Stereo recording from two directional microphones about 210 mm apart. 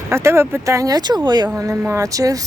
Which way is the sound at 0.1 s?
15° right (ahead or behind).